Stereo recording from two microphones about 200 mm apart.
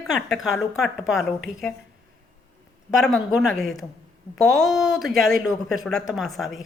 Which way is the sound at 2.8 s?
Centre (ahead or behind).